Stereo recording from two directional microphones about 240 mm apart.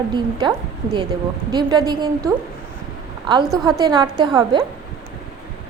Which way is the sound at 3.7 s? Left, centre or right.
Centre.